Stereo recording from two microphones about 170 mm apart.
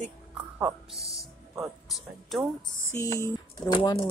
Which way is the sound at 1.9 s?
Centre (ahead or behind).